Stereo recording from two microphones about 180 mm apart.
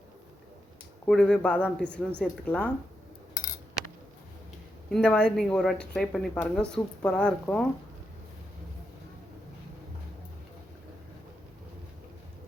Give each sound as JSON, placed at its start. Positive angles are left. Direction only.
{"t": 1.0, "sound": "speech", "side_deg": 5}
{"t": 4.9, "sound": "speech", "side_deg": 5}